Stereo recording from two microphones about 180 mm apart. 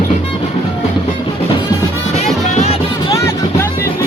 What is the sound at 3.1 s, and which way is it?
Music, 15° left (ahead or behind).